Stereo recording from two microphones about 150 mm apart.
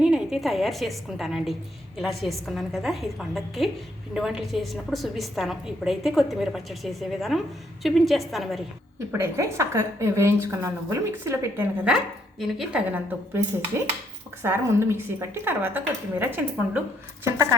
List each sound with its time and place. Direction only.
0.0 s a woman's voice: 5° right (ahead or behind)
9.1 s a woman's voice: 20° right (ahead or behind)
14.4 s a woman's voice: 15° right (ahead or behind)